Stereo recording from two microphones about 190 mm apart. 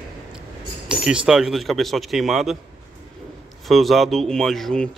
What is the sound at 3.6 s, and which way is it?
Speech, centre (ahead or behind).